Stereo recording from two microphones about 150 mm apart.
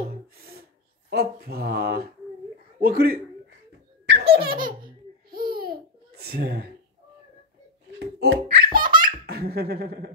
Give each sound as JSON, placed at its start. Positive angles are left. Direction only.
{"t": 0.1, "sound": "gasp", "side_deg": -90}
{"t": 1.1, "sound": "a man's voice", "side_deg": -90}
{"t": 4.2, "sound": "laughter", "side_deg": -90}
{"t": 5.6, "sound": "babbling", "side_deg": -85}
{"t": 8.0, "sound": "laughter", "side_deg": -90}